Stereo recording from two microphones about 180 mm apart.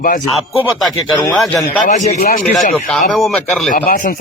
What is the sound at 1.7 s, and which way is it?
Speech, 45° left (ahead or behind).